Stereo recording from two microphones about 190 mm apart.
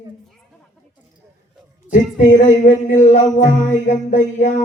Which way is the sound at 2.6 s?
40° left (ahead or behind).